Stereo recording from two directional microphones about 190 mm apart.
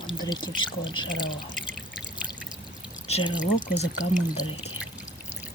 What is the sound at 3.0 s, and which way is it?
Speech, 30° left (ahead or behind).